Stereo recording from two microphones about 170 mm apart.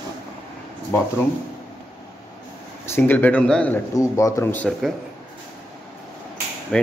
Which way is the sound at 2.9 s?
10° left (ahead or behind).